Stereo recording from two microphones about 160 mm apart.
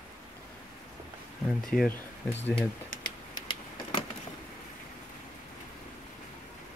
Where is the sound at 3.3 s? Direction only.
25° left (ahead or behind).